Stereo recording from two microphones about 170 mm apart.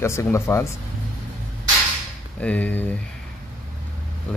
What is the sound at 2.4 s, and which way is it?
Speech, 10° left (ahead or behind).